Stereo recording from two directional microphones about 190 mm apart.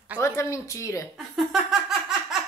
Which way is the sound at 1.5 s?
Centre (ahead or behind).